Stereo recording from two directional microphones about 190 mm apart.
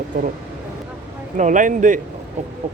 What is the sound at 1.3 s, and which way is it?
Speech, 40° right (ahead or behind).